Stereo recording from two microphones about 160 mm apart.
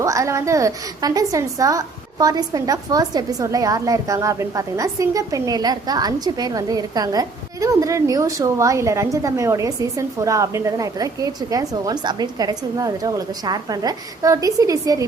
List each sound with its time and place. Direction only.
0.0 s a woman's voice: 20° right (ahead or behind)